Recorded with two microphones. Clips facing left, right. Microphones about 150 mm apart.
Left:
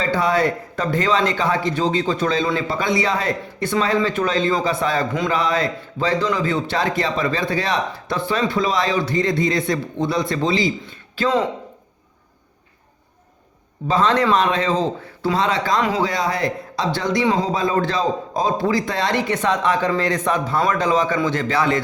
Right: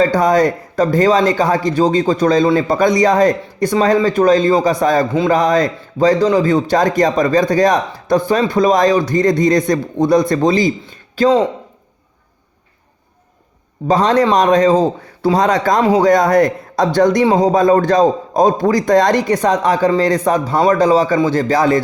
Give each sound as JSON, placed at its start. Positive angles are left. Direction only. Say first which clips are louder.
{"t": 0.0, "sound": "a man's voice", "louder": "right 7 dB", "side_deg": -40}
{"t": 13.8, "sound": "a man's voice", "louder": "right 5 dB", "side_deg": -40}